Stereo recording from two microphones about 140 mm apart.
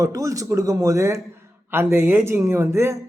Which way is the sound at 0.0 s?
25° right (ahead or behind).